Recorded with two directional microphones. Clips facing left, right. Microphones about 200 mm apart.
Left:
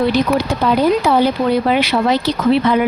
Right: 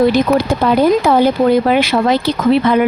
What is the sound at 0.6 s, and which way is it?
Speech, 55° right (ahead or behind).